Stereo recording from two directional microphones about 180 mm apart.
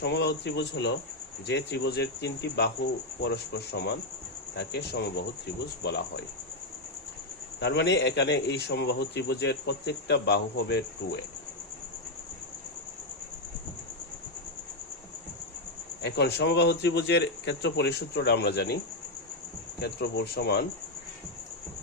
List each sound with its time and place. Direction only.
0.0 s speech: 70° left (ahead or behind)
7.6 s speech: 75° left (ahead or behind)
16.0 s speech: 70° left (ahead or behind)
19.8 s speech: 70° left (ahead or behind)